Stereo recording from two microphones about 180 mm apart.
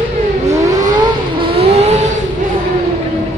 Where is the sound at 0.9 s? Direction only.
25° right (ahead or behind).